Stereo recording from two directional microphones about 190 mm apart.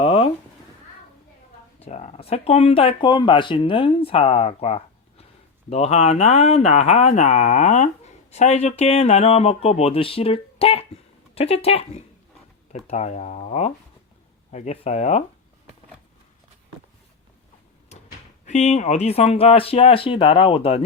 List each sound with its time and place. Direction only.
0.0 s cat: 30° left (ahead or behind)
1.8 s speech: 35° left (ahead or behind)
18.4 s speech: 35° left (ahead or behind)